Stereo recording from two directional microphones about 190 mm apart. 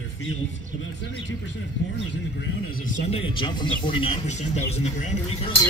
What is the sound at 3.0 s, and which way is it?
Speech, 30° left (ahead or behind).